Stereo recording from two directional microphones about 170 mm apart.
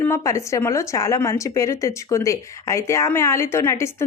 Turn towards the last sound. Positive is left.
turn(degrees=15)  # may be behind; listen again after turning